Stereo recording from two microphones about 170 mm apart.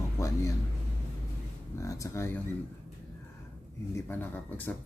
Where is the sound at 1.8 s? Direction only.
15° left (ahead or behind).